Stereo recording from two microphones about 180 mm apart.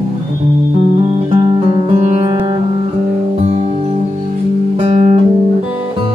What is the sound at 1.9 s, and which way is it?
Music, 35° right (ahead or behind).